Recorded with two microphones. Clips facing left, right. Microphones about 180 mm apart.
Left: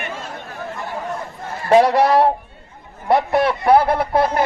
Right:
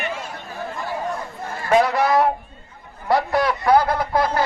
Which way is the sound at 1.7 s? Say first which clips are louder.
Left 4 dB; 35° left (ahead or behind).